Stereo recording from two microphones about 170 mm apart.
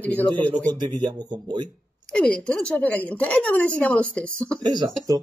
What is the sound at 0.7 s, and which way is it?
Speech, 25° right (ahead or behind).